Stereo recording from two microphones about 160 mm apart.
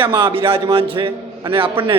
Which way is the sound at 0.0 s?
30° right (ahead or behind).